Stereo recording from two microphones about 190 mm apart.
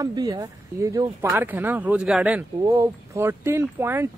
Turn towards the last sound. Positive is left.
turn(degrees=-10)  # may be behind; listen again after turning